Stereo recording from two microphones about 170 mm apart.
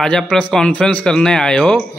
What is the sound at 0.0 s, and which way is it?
Speech, 5° left (ahead or behind).